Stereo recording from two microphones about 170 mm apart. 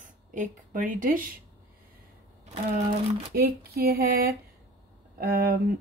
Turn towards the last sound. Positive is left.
turn(degrees=-60)  # may be behind; listen again after turning